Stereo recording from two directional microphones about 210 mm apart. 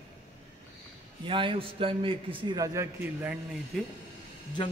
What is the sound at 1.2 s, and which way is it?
A man's voice, 25° right (ahead or behind).